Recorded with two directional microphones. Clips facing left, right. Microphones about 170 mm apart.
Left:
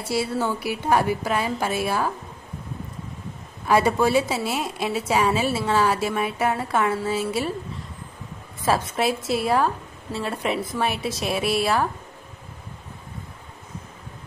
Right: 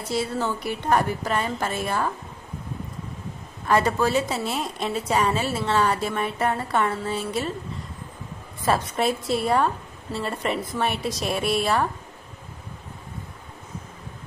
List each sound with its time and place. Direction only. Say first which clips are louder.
0.0 s a woman's voice: left 1 dB; 10° left (ahead or behind)
3.6 s a woman's voice: left 2 dB; 10° left (ahead or behind)
8.6 s a woman's voice: left 1 dB; centre (ahead or behind)